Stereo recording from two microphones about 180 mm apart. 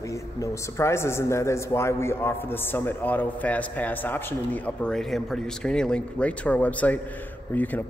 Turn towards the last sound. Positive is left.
turn(degrees=10)  # may be behind; listen again after turning